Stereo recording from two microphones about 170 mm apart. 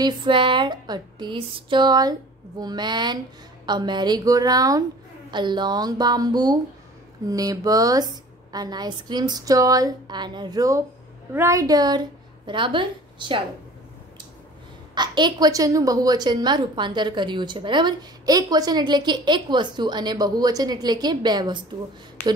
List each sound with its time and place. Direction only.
0.0 s a woman's voice: 30° right (ahead or behind)
15.0 s a woman's voice: 25° right (ahead or behind)